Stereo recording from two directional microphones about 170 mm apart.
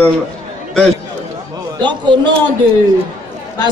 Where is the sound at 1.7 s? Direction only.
25° right (ahead or behind).